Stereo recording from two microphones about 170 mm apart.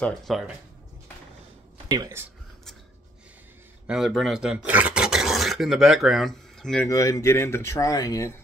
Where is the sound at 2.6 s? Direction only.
Centre (ahead or behind).